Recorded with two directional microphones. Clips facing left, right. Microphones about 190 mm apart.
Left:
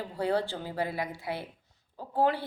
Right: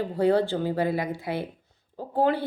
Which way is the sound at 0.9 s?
20° right (ahead or behind).